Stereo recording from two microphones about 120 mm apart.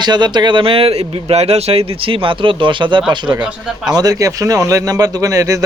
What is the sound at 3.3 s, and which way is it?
Speech, 10° right (ahead or behind).